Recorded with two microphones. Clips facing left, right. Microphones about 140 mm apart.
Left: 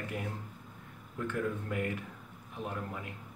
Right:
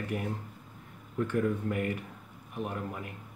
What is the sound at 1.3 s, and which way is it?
Speech, 15° right (ahead or behind).